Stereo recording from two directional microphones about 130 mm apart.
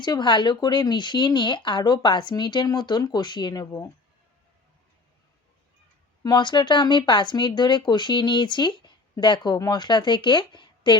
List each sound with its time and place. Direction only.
0.0 s speech: 35° left (ahead or behind)
6.2 s speech: 35° left (ahead or behind)